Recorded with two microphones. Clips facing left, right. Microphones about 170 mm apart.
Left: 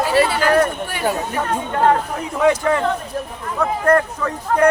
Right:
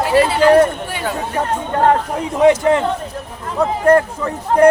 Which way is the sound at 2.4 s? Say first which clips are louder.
Right 4 dB; 20° right (ahead or behind).